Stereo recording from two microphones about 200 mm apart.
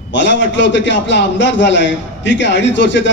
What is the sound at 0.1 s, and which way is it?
A man's voice, 65° left (ahead or behind).